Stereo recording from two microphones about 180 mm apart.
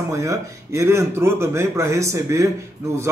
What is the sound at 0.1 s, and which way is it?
Speech, 15° right (ahead or behind).